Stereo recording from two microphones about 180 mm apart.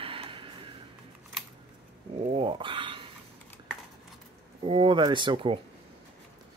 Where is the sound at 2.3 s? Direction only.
30° right (ahead or behind).